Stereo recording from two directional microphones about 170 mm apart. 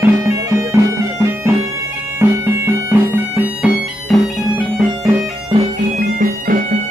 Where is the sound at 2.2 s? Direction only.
15° right (ahead or behind).